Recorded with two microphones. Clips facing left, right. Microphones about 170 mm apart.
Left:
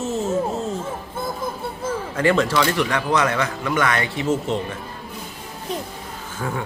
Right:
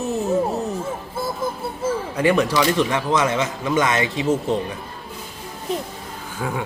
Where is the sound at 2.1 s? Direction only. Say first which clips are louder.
Even; 15° right (ahead or behind).